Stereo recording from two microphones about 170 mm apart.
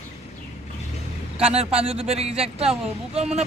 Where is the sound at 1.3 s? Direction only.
35° right (ahead or behind).